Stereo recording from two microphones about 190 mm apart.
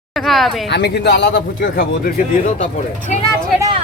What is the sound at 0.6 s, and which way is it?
Speech, 60° left (ahead or behind).